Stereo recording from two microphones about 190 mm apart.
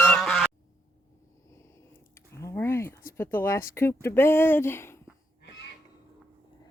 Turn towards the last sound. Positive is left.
turn(degrees=15)  # may be behind; listen again after turning